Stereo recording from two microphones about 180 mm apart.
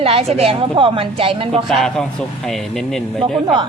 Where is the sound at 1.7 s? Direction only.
Centre (ahead or behind).